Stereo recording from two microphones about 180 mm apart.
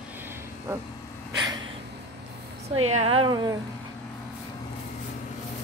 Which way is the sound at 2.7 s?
35° right (ahead or behind).